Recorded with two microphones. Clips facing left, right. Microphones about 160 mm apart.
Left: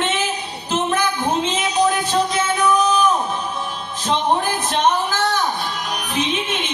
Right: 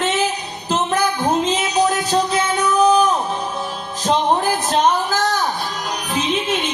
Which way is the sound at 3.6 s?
40° right (ahead or behind).